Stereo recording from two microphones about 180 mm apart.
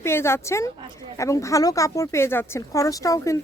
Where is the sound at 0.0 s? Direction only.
15° left (ahead or behind).